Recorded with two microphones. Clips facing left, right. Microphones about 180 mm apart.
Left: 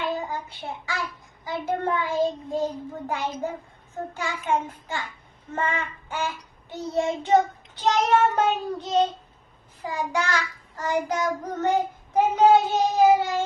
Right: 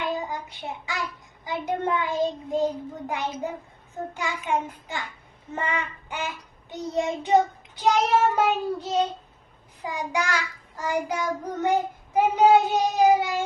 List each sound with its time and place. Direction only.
0.0 s child singing: 15° right (ahead or behind)